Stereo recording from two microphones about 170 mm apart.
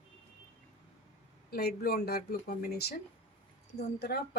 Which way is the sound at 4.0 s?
75° left (ahead or behind).